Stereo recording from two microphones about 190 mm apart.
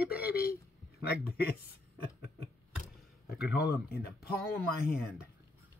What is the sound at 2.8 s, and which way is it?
Speech, 55° left (ahead or behind).